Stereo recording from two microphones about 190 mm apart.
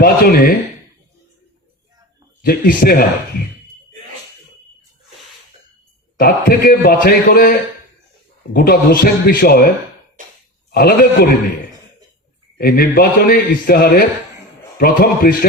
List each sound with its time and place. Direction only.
0.0 s a man's voice: 50° left (ahead or behind)
2.4 s a man's voice: 50° left (ahead or behind)
6.1 s a man's voice: 50° left (ahead or behind)
8.5 s a man's voice: 50° left (ahead or behind)
10.2 s cough: 45° right (ahead or behind)
10.7 s a man's voice: 55° left (ahead or behind)
12.5 s a man's voice: 50° left (ahead or behind)